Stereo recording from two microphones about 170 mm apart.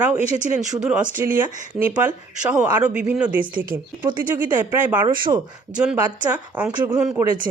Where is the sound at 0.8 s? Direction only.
5° right (ahead or behind).